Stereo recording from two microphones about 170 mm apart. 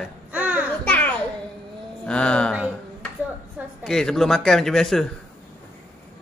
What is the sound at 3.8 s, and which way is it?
A man's voice, 5° left (ahead or behind).